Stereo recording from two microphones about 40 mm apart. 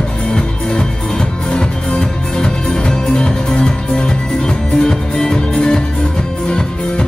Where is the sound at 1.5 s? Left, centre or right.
Left.